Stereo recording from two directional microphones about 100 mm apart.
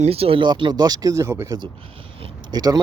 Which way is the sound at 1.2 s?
25° right (ahead or behind).